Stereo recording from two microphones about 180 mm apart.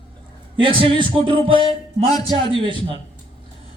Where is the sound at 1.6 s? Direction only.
25° left (ahead or behind).